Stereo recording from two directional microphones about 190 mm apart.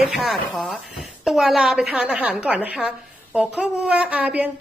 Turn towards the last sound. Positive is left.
turn(degrees=-5)  # may be behind; listen again after turning